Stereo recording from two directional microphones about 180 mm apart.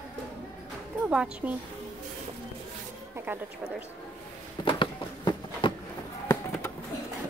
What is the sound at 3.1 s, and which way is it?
Speech, 10° right (ahead or behind).